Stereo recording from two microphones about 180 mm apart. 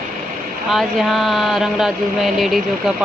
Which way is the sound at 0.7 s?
Centre (ahead or behind).